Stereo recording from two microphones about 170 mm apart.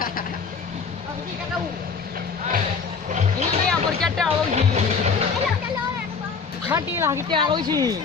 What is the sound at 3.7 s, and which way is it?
Speech, 5° left (ahead or behind).